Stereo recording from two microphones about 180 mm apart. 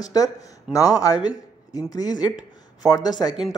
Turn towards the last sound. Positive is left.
turn(degrees=-5)  # may be behind; listen again after turning